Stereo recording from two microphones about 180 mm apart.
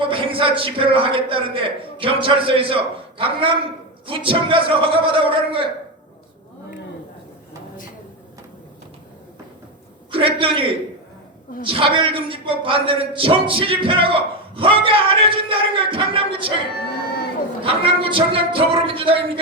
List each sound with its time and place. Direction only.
0.0 s a man's voice: 30° right (ahead or behind)
10.1 s a man's voice: 30° right (ahead or behind)
16.9 s a sound: 60° left (ahead or behind)
17.6 s speech: 30° right (ahead or behind)